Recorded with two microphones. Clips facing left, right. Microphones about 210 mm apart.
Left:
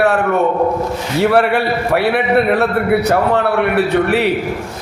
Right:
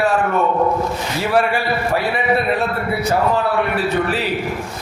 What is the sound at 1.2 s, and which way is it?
A man's voice, 65° left (ahead or behind).